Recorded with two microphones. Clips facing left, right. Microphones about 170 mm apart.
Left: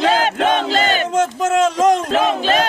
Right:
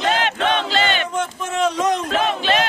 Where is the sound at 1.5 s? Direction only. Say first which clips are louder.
Left 4 dB; 45° left (ahead or behind).